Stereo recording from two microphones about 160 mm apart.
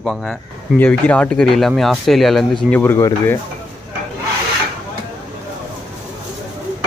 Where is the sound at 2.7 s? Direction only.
15° left (ahead or behind).